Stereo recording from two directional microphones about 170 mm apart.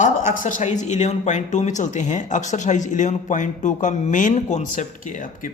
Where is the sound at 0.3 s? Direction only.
45° left (ahead or behind).